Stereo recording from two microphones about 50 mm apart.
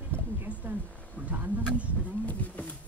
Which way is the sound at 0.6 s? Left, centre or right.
Right.